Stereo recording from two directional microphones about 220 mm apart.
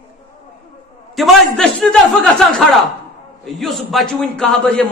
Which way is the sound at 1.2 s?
Centre (ahead or behind).